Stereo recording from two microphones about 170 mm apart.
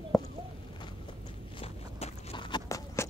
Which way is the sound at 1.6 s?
35° left (ahead or behind).